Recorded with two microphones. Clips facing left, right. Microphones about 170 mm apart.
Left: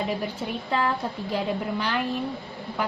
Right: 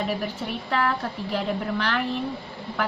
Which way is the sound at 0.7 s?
20° left (ahead or behind).